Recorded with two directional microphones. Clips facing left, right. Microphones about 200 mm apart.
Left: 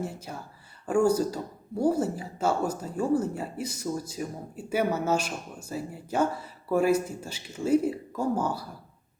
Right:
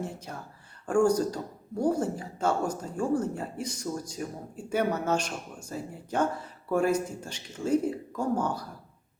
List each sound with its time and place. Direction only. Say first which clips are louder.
0.0 s speech: left 1 dB; 10° left (ahead or behind)